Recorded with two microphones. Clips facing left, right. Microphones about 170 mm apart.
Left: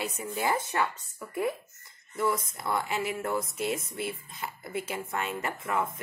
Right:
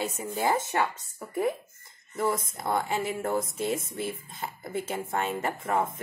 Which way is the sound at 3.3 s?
50° right (ahead or behind).